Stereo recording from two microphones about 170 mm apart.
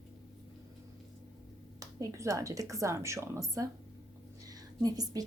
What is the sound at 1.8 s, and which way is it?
A woman's voice, 20° right (ahead or behind).